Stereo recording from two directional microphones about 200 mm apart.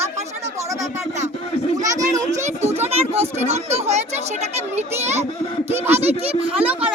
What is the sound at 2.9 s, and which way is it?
A child's voice, 30° right (ahead or behind).